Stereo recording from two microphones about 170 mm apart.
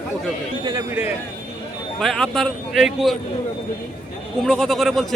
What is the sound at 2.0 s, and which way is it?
Speech, centre (ahead or behind).